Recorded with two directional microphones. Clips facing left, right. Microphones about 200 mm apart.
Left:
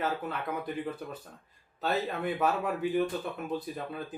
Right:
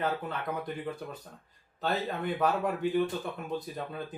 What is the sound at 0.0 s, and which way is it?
Speech, 5° left (ahead or behind).